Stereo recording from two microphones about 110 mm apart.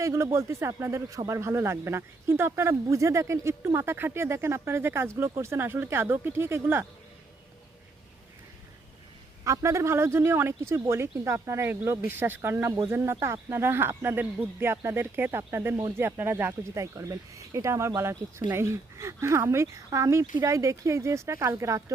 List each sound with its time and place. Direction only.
0.0 s speech: 25° right (ahead or behind)
9.4 s speech: 30° right (ahead or behind)